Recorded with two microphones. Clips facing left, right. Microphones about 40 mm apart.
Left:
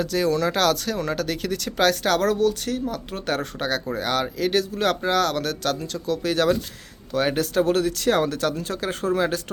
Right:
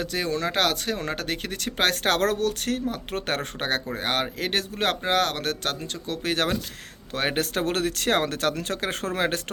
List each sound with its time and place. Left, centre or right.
0.0 s speech: right